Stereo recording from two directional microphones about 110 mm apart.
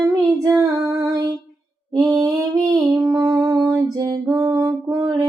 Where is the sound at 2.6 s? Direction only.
30° right (ahead or behind).